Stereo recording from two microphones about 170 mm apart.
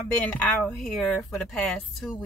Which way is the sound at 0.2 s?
10° left (ahead or behind).